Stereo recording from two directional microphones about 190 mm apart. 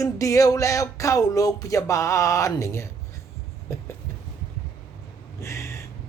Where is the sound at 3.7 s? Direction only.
15° left (ahead or behind).